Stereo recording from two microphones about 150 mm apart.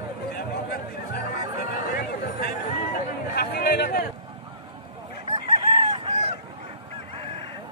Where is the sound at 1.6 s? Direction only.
90° left.